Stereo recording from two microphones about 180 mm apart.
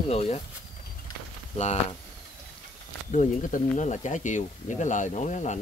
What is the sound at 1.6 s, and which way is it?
Speech, 40° left (ahead or behind).